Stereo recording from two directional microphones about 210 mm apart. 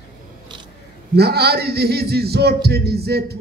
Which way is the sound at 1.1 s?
50° right (ahead or behind).